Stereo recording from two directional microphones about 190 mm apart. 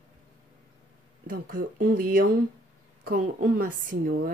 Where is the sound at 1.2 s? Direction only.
50° right (ahead or behind).